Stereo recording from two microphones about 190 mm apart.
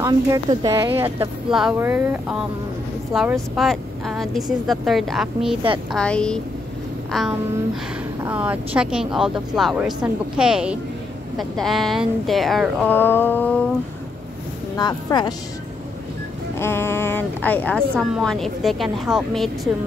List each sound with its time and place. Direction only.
0.0 s speech: 20° right (ahead or behind); by 6.4 s 5° left (ahead or behind)
7.1 s a sound: centre (ahead or behind)
8.2 s speech: 10° right (ahead or behind)
14.8 s speech: 20° left (ahead or behind)
16.5 s a woman's voice: 15° left (ahead or behind)